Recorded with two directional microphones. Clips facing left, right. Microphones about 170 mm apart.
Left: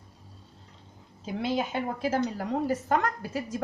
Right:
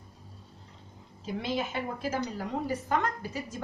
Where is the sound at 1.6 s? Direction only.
45° left (ahead or behind).